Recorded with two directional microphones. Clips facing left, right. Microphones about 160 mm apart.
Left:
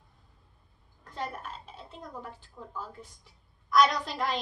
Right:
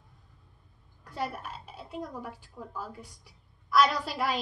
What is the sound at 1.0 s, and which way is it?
A woman's voice, 10° right (ahead or behind).